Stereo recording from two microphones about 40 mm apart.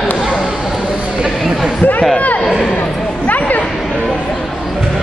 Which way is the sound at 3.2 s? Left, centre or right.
Left.